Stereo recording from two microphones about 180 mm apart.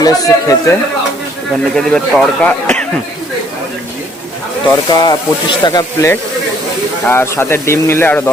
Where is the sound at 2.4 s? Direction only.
5° left (ahead or behind).